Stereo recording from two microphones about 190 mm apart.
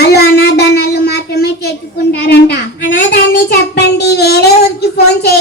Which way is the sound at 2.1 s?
60° left (ahead or behind).